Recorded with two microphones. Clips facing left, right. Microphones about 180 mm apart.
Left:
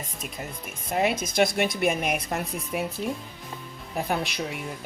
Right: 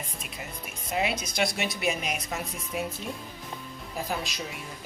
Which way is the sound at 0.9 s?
50° left (ahead or behind).